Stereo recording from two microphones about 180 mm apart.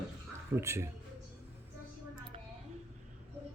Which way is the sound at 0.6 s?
15° right (ahead or behind).